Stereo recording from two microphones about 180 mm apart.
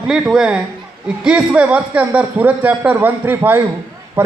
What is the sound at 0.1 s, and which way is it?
A woman's voice, 5° right (ahead or behind).